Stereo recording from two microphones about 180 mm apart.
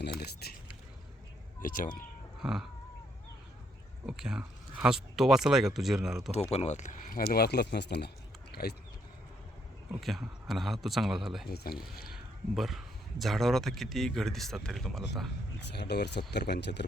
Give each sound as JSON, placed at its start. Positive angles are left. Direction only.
{"t": 0.0, "sound": "speech", "side_deg": 60}
{"t": 1.6, "sound": "speech", "side_deg": 50}
{"t": 2.4, "sound": "a sound", "side_deg": -5}
{"t": 4.0, "sound": "speech", "side_deg": -5}
{"t": 6.5, "sound": "speech", "side_deg": 40}
{"t": 10.0, "sound": "speech", "side_deg": 0}
{"t": 11.4, "sound": "speech", "side_deg": 60}
{"t": 12.1, "sound": "speech", "side_deg": 0}
{"t": 15.7, "sound": "speech", "side_deg": 65}